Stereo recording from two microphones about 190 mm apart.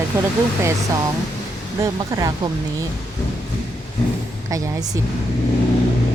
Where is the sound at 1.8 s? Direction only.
20° right (ahead or behind).